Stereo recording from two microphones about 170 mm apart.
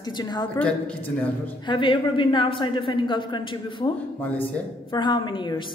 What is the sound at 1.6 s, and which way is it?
A woman's voice, 30° left (ahead or behind).